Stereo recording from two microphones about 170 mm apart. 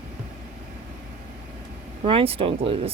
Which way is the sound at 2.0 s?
35° right (ahead or behind).